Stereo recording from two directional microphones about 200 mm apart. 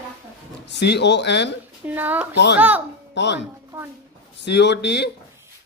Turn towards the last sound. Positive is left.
turn(degrees=60)  # may be behind; listen again after turning